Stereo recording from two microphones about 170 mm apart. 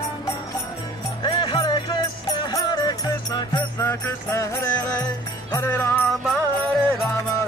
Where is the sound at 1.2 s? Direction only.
30° left (ahead or behind).